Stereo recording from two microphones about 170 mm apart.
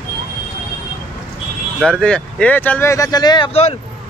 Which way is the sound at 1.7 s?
5° left (ahead or behind).